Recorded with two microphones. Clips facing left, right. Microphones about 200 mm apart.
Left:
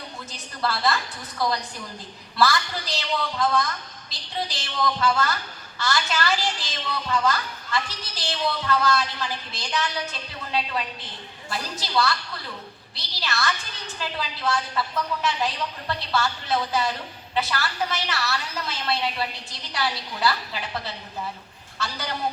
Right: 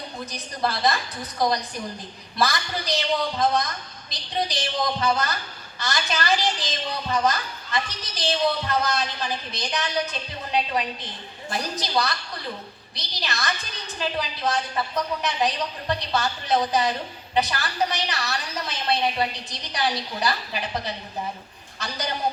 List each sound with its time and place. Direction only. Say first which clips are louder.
0.3 s a woman's voice: right 1 dB; 15° right (ahead or behind)